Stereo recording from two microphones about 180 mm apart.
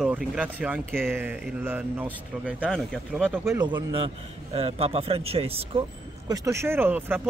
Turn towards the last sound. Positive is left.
turn(degrees=-10)  # may be behind; listen again after turning